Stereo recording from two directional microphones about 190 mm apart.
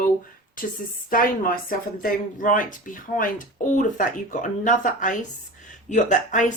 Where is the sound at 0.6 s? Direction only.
45° left (ahead or behind).